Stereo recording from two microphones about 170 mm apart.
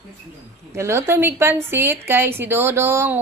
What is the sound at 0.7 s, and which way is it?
A woman's voice, 15° right (ahead or behind).